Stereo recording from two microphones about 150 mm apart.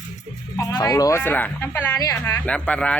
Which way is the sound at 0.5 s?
25° left (ahead or behind).